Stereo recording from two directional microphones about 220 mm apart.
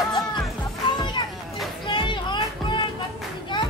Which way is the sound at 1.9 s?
20° left (ahead or behind).